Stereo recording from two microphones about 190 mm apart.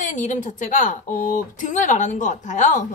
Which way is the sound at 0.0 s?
40° left (ahead or behind).